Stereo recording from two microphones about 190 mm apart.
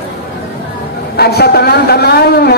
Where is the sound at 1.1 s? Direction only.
55° left (ahead or behind).